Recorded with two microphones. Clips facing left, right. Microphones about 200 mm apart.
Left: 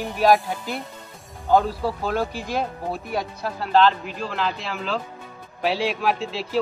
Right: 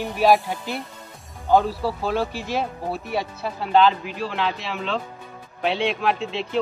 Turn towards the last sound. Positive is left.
turn(degrees=5)  # may be behind; listen again after turning